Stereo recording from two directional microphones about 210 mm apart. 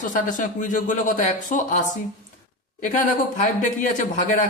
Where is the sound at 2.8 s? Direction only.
35° left (ahead or behind).